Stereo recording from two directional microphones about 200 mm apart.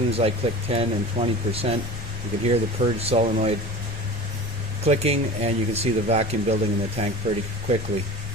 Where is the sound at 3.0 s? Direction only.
30° right (ahead or behind).